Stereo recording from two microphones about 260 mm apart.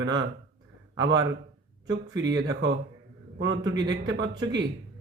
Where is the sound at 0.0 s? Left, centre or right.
Right.